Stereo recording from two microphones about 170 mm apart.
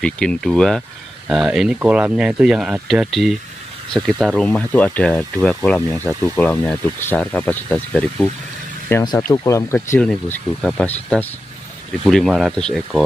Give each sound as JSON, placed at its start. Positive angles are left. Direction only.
{"t": 0.0, "sound": "speech", "side_deg": 5}
{"t": 9.0, "sound": "speech", "side_deg": 25}
{"t": 9.8, "sound": "speech", "side_deg": 5}